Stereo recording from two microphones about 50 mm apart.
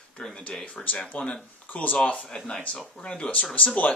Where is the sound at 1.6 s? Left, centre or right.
Left.